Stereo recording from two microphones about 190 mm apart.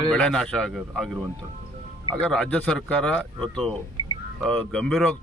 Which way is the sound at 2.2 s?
5° left (ahead or behind).